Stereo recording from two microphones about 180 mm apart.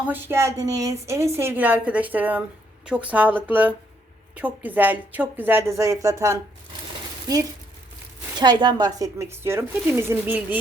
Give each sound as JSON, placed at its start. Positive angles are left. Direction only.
{"t": 0.1, "sound": "speech", "side_deg": -15}